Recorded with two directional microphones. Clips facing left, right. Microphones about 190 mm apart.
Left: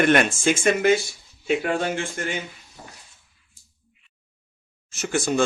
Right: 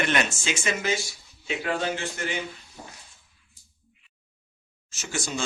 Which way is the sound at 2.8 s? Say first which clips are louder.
Even; 10° right (ahead or behind).